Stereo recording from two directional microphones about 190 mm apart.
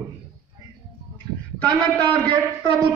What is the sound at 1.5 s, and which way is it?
Speech, 5° left (ahead or behind).